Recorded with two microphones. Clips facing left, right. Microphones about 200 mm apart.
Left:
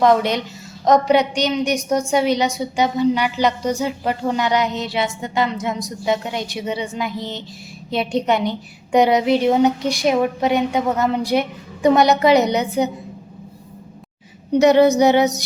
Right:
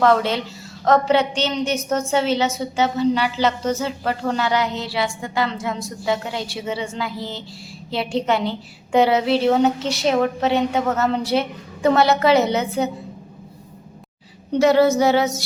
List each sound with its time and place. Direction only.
0.0 s a woman's voice: 15° left (ahead or behind)
14.5 s a woman's voice: 20° left (ahead or behind)